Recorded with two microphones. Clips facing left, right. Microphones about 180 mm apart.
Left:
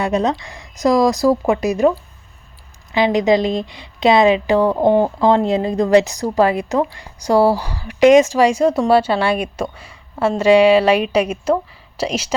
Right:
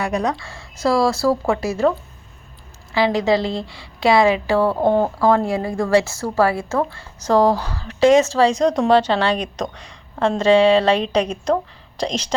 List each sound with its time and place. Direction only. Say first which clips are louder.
0.0 s a woman's voice: left 4 dB; 25° left (ahead or behind)
2.9 s a woman's voice: left 3 dB; 20° left (ahead or behind)